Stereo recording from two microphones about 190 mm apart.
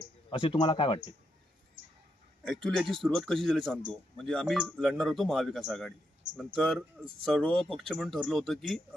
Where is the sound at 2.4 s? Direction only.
Centre (ahead or behind).